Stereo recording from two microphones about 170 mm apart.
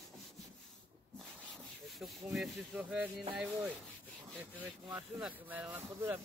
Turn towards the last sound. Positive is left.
turn(degrees=-10)  # may be behind; listen again after turning